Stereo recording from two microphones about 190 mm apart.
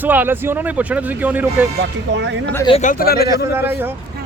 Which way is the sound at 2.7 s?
35° left (ahead or behind).